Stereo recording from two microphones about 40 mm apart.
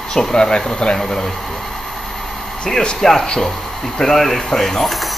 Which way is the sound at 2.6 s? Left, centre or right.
Left.